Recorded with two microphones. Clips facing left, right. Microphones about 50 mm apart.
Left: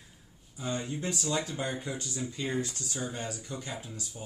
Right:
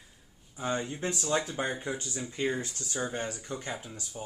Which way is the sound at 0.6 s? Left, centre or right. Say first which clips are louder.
Right 2 dB; right.